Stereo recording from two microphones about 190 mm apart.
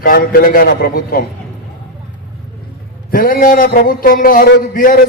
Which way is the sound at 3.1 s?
45° left (ahead or behind).